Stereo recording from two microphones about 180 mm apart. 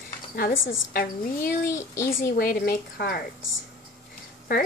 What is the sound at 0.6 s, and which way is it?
Speech, 90° left.